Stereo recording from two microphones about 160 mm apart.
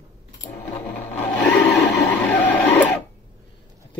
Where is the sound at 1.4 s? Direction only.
5° left (ahead or behind).